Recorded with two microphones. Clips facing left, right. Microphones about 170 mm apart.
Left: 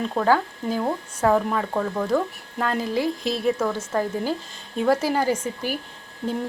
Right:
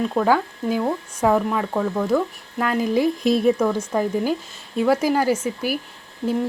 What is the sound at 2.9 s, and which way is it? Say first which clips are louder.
Speech: right 6 dB; 20° right (ahead or behind).